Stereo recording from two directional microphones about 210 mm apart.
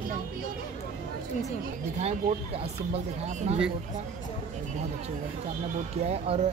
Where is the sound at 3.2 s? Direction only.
35° right (ahead or behind).